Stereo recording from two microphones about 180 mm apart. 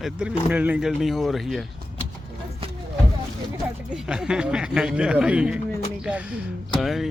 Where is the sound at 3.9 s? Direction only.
5° right (ahead or behind).